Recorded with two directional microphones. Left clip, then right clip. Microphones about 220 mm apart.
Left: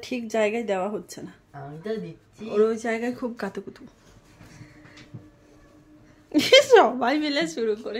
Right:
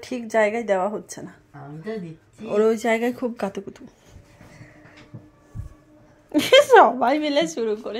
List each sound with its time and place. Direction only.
0.0 s a woman's voice: 5° right (ahead or behind)
2.5 s speech: 30° right (ahead or behind); by 3.9 s 10° right (ahead or behind)
6.3 s speech: 15° left (ahead or behind)
6.9 s a woman's voice: centre (ahead or behind)